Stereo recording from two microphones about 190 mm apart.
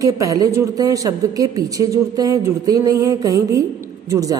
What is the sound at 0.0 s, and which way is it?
A woman's voice, 20° right (ahead or behind).